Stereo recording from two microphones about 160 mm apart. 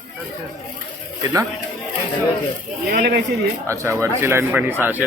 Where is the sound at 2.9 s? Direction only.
75° right (ahead or behind).